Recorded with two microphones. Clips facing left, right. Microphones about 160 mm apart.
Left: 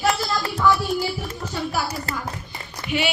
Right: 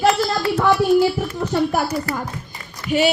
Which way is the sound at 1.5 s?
55° right (ahead or behind).